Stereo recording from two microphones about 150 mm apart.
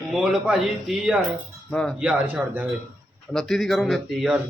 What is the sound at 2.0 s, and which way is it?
Speech, 10° right (ahead or behind).